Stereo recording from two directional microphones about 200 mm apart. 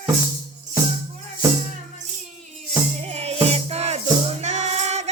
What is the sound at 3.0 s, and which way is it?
Music, 30° right (ahead or behind).